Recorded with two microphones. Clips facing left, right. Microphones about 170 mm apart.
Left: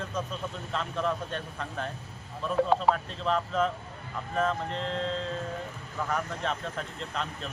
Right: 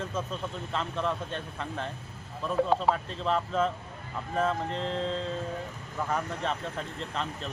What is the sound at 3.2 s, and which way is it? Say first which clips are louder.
Speech: even; centre (ahead or behind).